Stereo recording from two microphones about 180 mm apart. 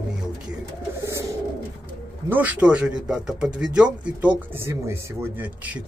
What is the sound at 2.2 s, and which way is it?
Speech, 10° right (ahead or behind).